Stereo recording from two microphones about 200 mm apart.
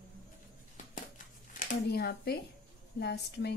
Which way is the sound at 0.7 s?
40° left (ahead or behind).